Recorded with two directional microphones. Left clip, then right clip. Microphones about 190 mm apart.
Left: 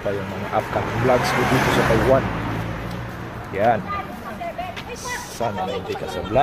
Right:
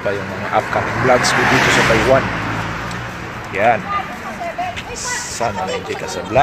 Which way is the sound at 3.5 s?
15° left (ahead or behind).